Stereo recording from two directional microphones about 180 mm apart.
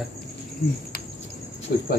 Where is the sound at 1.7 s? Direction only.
55° left (ahead or behind).